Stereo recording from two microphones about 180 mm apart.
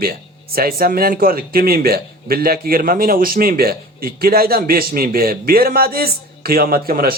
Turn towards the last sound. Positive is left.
turn(degrees=-55)  # may be behind; listen again after turning